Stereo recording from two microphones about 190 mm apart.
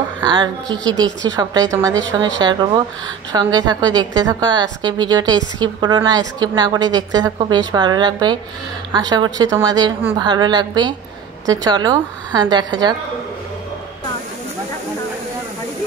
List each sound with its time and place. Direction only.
0.2 s a woman's voice: 25° right (ahead or behind)